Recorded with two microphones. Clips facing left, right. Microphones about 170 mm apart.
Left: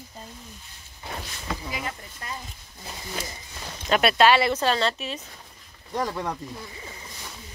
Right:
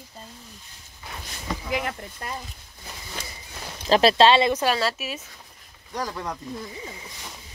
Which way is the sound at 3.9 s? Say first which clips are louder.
Right 2 dB; 30° right (ahead or behind).